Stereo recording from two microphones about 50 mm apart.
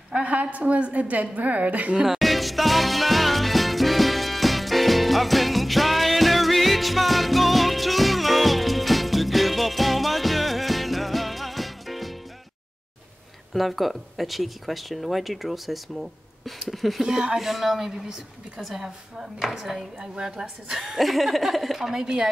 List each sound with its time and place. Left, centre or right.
0.1 s a woman's voice: right
2.0 s music: centre
13.5 s a woman's voice: centre